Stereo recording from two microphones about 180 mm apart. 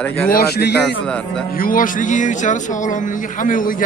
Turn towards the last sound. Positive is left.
turn(degrees=50)  # may be behind; listen again after turning